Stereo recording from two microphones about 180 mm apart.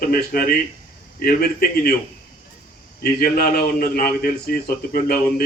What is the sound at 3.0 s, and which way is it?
A man's voice, 55° left (ahead or behind).